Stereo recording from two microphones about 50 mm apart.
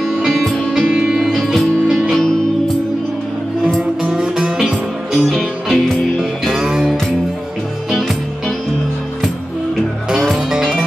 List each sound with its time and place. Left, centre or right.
1.1 s music: centre
4.0 s music: centre
6.4 s music: centre
10.2 s music: centre